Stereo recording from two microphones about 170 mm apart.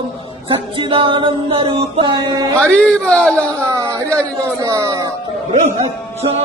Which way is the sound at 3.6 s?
20° right (ahead or behind).